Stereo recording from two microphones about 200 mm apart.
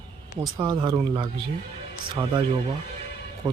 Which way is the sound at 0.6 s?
20° right (ahead or behind).